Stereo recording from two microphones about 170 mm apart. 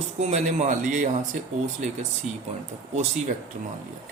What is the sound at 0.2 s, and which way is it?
Speech, 40° right (ahead or behind).